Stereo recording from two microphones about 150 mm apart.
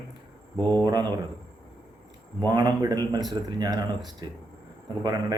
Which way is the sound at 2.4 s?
25° right (ahead or behind).